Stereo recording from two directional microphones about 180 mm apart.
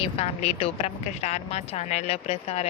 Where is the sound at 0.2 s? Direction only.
35° left (ahead or behind).